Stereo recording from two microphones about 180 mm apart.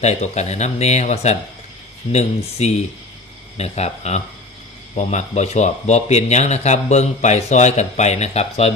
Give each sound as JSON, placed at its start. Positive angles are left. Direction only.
{"t": 0.0, "sound": "speech", "side_deg": 40}